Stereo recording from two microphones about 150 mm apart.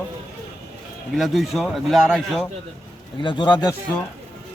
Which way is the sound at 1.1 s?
Centre (ahead or behind).